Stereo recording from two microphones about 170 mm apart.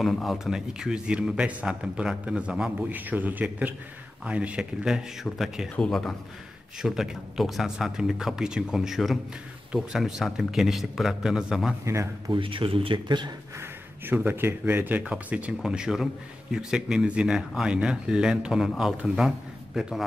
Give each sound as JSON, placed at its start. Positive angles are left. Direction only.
{"t": 0.0, "sound": "speech", "side_deg": 0}
{"t": 11.8, "sound": "speech", "side_deg": -15}
{"t": 12.3, "sound": "speech", "side_deg": -30}
{"t": 13.6, "sound": "speech", "side_deg": -10}